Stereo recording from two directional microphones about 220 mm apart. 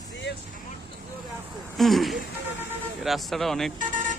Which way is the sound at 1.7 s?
Centre (ahead or behind).